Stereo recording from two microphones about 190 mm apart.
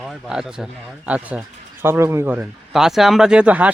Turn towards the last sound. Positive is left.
turn(degrees=-5)  # may be behind; listen again after turning